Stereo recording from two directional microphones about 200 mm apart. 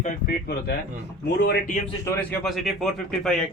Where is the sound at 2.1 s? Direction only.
5° left (ahead or behind).